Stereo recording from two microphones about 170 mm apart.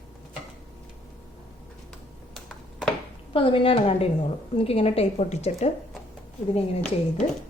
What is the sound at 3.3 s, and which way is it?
A woman's voice, 35° left (ahead or behind).